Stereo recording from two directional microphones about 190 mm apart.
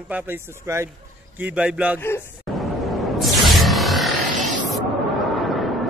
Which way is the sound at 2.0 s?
15° left (ahead or behind).